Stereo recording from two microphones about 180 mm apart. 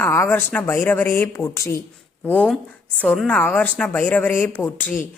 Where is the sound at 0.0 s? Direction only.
10° left (ahead or behind).